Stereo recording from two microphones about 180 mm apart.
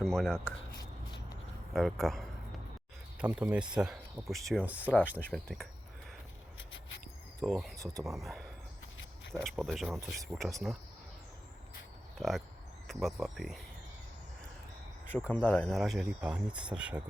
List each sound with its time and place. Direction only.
0.0 s speech: 5° left (ahead or behind)
0.8 s a sound: 20° left (ahead or behind)
1.7 s speech: centre (ahead or behind)
5.1 s speech: 5° left (ahead or behind)
7.4 s speech: centre (ahead or behind)
12.2 s speech: centre (ahead or behind)
15.3 s speech: 10° left (ahead or behind)